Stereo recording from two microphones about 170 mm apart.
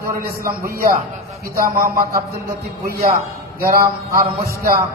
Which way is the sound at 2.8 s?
60° right (ahead or behind).